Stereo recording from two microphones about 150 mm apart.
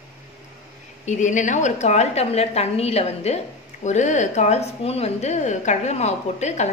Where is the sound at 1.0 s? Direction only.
55° left (ahead or behind).